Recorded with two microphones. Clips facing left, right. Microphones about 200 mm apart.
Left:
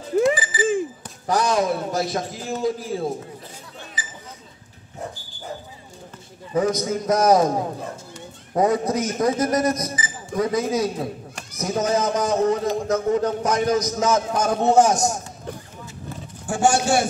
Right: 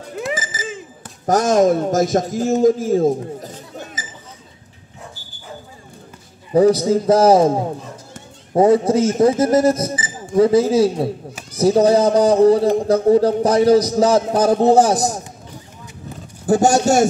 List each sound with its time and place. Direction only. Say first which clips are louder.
0.3 s bicycle bell: left 4 dB; 45° right (ahead or behind)
1.2 s a man's voice: right 7 dB; 45° right (ahead or behind)
6.5 s a man's voice: right 8 dB; 35° right (ahead or behind)
16.4 s a man's voice: right 6 dB; 40° right (ahead or behind)